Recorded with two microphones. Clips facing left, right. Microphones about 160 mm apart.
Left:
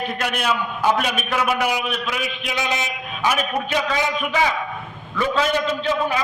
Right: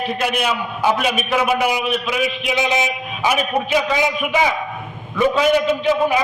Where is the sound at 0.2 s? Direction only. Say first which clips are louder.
Right 1 dB; 5° right (ahead or behind).